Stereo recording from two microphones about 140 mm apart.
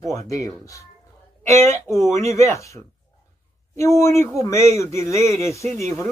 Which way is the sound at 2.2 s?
20° left (ahead or behind).